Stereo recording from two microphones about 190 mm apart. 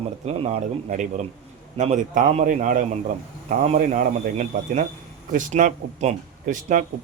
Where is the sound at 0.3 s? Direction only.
35° right (ahead or behind).